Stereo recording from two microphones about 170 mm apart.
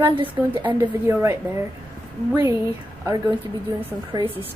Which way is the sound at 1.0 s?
15° right (ahead or behind).